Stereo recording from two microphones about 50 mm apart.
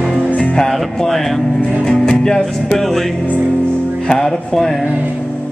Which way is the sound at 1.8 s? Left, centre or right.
Centre.